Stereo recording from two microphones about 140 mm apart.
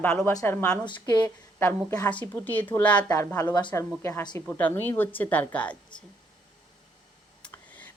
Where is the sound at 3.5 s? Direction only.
35° left (ahead or behind).